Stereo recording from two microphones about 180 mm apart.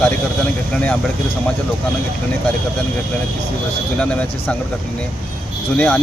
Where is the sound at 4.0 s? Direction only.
5° left (ahead or behind).